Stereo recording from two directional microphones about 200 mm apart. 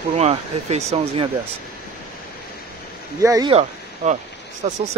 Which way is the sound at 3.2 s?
15° right (ahead or behind).